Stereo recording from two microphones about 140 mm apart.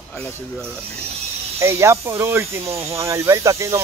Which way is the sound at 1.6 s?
20° right (ahead or behind).